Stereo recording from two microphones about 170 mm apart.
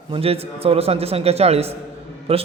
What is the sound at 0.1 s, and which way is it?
A man's voice, 35° right (ahead or behind).